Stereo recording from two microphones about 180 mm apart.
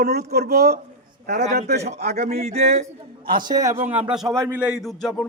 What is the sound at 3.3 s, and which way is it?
Speech, 25° right (ahead or behind).